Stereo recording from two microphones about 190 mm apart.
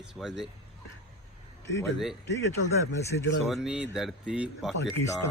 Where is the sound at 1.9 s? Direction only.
Centre (ahead or behind).